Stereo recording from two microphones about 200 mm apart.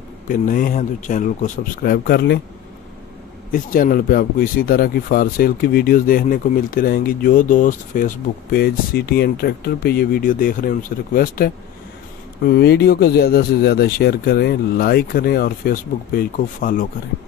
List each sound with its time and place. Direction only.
0.3 s speech: 45° left (ahead or behind)
3.5 s speech: 45° left (ahead or behind)